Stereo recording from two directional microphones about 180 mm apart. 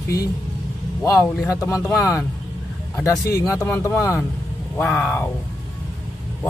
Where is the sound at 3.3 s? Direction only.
15° left (ahead or behind).